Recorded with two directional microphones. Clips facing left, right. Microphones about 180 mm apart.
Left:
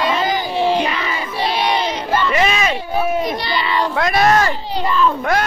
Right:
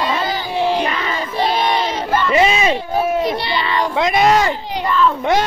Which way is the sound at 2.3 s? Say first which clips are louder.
Right 3 dB; 25° right (ahead or behind).